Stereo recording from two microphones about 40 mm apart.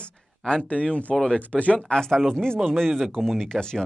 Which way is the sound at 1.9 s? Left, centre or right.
Centre.